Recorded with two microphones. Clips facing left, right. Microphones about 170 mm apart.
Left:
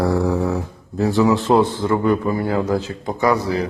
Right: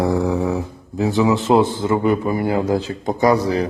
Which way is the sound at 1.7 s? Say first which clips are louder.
Even; 25° right (ahead or behind).